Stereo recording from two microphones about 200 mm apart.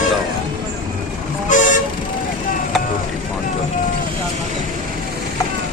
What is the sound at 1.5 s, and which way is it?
Vehicle, 40° left (ahead or behind).